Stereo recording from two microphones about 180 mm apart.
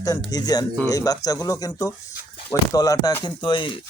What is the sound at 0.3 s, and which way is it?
Speech, 20° left (ahead or behind).